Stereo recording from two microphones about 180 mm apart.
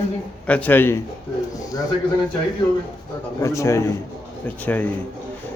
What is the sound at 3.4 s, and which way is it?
Speech, 15° left (ahead or behind).